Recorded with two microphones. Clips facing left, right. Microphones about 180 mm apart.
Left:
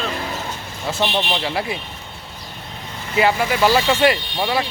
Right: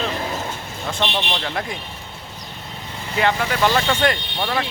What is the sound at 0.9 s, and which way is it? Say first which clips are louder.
Speech: left 3 dB; 10° left (ahead or behind).